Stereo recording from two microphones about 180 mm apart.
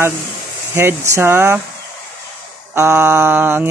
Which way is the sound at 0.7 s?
15° right (ahead or behind).